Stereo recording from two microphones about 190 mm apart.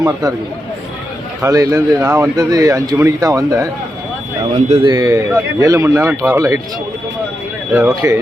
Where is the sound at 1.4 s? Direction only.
15° right (ahead or behind).